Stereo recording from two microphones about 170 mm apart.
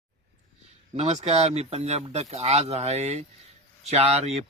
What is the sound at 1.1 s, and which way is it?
Speech, 40° right (ahead or behind).